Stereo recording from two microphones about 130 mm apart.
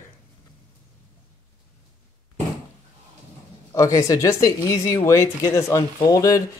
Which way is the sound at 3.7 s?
25° left (ahead or behind).